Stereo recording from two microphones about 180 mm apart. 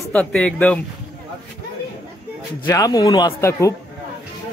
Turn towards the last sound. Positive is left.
turn(degrees=15)  # may be behind; listen again after turning